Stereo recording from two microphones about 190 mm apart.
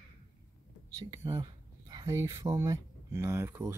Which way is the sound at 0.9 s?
20° right (ahead or behind).